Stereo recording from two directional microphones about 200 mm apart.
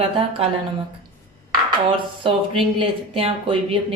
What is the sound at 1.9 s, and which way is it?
Speech, 25° right (ahead or behind).